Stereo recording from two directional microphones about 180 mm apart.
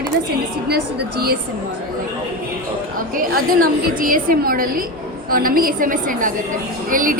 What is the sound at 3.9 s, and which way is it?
A woman's voice, 50° right (ahead or behind).